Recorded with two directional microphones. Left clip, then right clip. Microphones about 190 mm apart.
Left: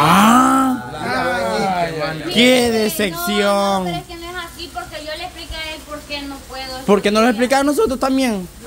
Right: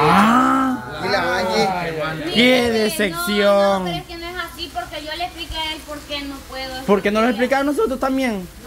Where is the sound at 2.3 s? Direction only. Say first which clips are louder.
Left 2 dB; 15° left (ahead or behind).